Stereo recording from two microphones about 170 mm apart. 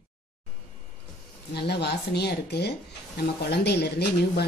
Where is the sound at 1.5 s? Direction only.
75° left (ahead or behind).